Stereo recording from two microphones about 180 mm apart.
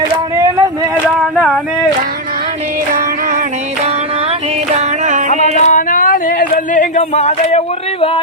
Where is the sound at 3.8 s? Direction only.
35° right (ahead or behind).